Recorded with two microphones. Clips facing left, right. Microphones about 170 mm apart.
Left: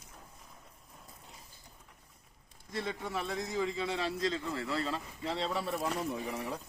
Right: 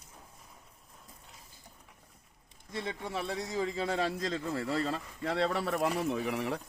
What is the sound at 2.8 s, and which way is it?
Speech, 30° right (ahead or behind).